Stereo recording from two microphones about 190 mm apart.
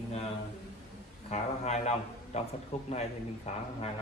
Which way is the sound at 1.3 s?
35° left (ahead or behind).